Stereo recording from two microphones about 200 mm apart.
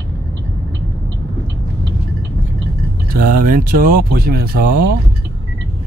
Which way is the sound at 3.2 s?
45° right (ahead or behind).